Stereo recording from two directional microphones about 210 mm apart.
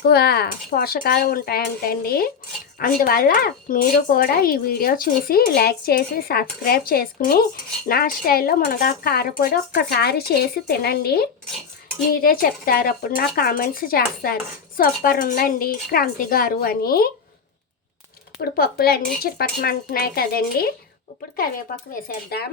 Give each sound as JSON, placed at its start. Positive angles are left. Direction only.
{"t": 0.1, "sound": "speech", "side_deg": 50}
{"t": 18.4, "sound": "speech", "side_deg": 45}